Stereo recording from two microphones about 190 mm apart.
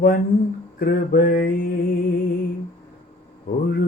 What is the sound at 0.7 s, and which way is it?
Music, 50° left (ahead or behind).